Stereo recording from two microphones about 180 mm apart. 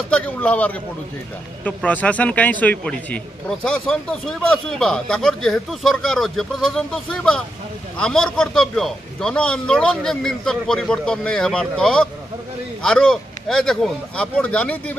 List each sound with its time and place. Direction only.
0.1 s a man's voice: 5° left (ahead or behind)